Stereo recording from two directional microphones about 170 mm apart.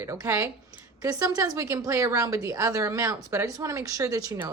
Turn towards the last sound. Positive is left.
turn(degrees=-20)  # may be behind; listen again after turning